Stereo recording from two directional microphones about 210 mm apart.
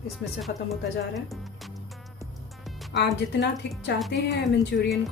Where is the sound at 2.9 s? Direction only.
55° left (ahead or behind).